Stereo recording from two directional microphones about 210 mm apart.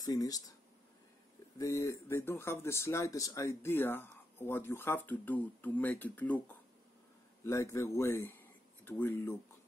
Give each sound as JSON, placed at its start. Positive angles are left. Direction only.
{"t": 0.0, "sound": "speech", "side_deg": 15}
{"t": 1.6, "sound": "speech", "side_deg": 15}
{"t": 7.4, "sound": "speech", "side_deg": 15}